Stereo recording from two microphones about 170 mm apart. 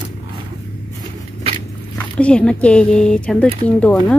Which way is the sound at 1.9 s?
5° left (ahead or behind).